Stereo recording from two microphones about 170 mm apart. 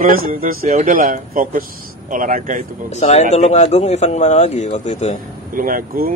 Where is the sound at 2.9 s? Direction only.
40° left (ahead or behind).